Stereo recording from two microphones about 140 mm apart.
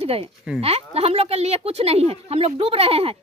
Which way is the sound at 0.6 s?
45° right (ahead or behind).